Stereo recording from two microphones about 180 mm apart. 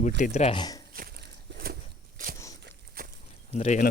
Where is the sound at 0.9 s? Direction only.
55° right (ahead or behind).